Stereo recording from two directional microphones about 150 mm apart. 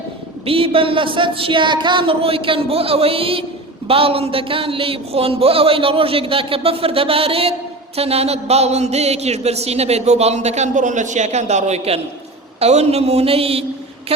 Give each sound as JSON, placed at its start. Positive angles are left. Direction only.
{"t": 0.4, "sound": "a man's voice", "side_deg": -40}